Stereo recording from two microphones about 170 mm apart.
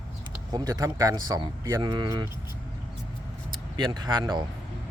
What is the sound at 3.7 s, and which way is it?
Speech, 25° right (ahead or behind).